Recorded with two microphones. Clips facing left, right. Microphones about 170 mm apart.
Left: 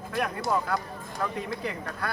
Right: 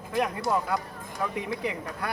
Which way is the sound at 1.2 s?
15° right (ahead or behind).